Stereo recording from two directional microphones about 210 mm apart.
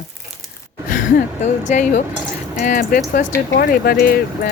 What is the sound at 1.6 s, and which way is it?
Speech, 35° left (ahead or behind).